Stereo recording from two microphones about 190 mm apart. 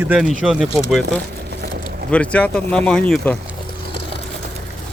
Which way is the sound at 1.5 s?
60° right (ahead or behind).